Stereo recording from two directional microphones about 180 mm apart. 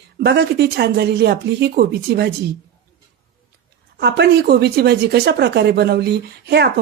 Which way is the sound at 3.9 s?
65° right (ahead or behind).